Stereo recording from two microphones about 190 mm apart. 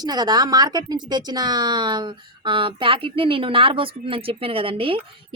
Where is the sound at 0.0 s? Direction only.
20° right (ahead or behind).